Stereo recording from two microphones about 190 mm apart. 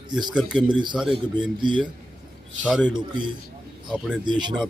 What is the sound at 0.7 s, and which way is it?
A man's voice, 25° right (ahead or behind).